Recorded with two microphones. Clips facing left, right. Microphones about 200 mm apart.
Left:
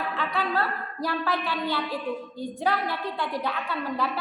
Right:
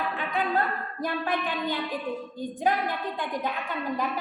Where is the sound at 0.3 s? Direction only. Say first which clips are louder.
Right 2 dB; 15° right (ahead or behind).